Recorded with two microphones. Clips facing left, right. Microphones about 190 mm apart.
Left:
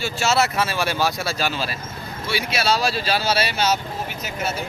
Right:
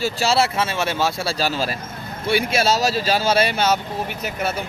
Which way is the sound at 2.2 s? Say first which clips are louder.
Right 4 dB; 55° right (ahead or behind).